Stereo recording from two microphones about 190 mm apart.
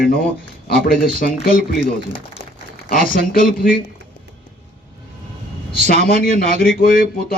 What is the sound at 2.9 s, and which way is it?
Speech, 50° left (ahead or behind).